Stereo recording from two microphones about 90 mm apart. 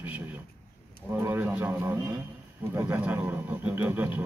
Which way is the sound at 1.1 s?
25° right (ahead or behind).